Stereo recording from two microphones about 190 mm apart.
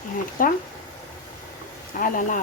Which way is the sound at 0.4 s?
45° left (ahead or behind).